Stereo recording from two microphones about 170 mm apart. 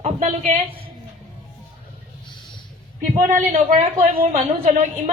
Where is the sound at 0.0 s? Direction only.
45° right (ahead or behind).